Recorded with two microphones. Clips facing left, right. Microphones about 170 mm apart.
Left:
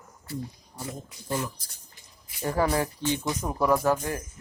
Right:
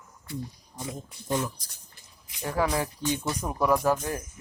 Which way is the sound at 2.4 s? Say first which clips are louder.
Left 2 dB; centre (ahead or behind).